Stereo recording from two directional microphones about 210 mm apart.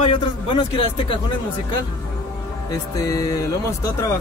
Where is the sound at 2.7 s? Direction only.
15° left (ahead or behind).